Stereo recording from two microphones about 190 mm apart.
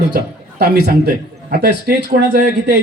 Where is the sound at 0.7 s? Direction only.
55° right (ahead or behind).